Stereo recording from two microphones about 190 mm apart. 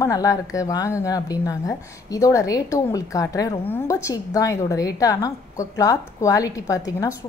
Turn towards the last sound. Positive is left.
turn(degrees=20)  # may be behind; listen again after turning